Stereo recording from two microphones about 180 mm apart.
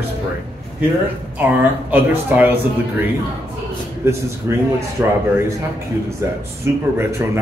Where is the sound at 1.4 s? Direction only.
10° right (ahead or behind).